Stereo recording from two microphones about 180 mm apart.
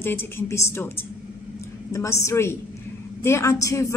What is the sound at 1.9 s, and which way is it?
A woman's voice, 15° left (ahead or behind).